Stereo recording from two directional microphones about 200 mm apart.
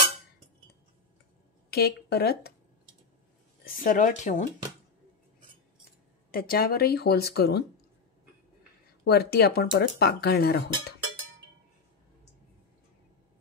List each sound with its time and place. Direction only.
1.7 s speech: 55° left (ahead or behind)
3.6 s speech: 45° left (ahead or behind)
6.3 s speech: 50° left (ahead or behind)
9.0 s speech: 50° left (ahead or behind)